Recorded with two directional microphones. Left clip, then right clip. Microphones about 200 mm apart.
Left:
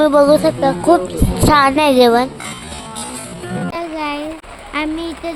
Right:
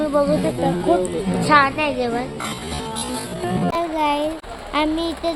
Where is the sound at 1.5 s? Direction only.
55° left (ahead or behind).